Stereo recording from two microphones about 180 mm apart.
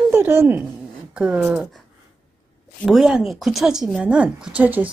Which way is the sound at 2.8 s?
5° right (ahead or behind).